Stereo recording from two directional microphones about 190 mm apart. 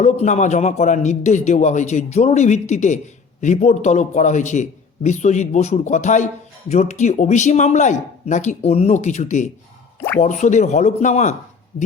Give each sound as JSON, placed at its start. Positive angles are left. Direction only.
{"t": 0.0, "sound": "a man's voice", "side_deg": 35}